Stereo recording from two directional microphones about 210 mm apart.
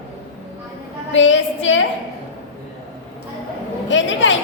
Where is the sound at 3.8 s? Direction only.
60° left (ahead or behind).